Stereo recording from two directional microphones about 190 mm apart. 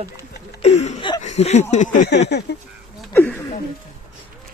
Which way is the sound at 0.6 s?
35° left (ahead or behind).